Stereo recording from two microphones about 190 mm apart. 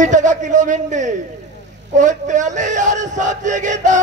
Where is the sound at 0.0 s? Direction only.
40° right (ahead or behind).